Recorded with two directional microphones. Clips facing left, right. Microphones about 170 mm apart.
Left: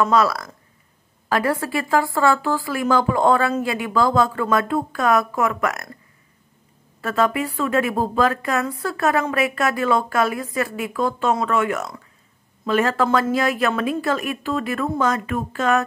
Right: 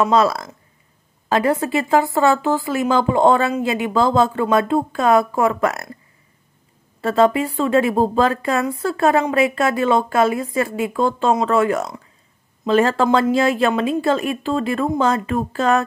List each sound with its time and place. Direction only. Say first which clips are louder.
0.1 s speech: right 2 dB; 25° right (ahead or behind)
7.0 s speech: right 5 dB; 25° right (ahead or behind)